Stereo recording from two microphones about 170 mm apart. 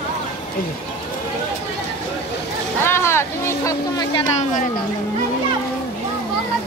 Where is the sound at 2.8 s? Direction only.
15° left (ahead or behind).